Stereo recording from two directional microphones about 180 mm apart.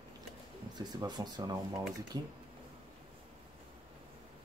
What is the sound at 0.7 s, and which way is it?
Speech, 20° right (ahead or behind).